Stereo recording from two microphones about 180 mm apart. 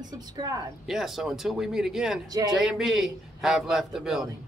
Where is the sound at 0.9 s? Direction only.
Centre (ahead or behind).